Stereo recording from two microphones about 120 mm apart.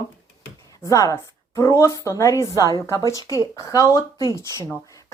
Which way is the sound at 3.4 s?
35° right (ahead or behind).